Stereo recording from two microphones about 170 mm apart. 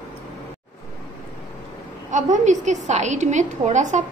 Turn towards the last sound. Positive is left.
turn(degrees=-45)  # may be behind; listen again after turning